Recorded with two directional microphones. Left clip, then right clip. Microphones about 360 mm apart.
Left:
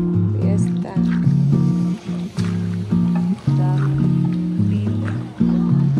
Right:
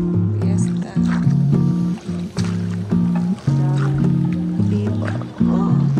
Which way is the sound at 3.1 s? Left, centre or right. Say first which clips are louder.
Even; centre.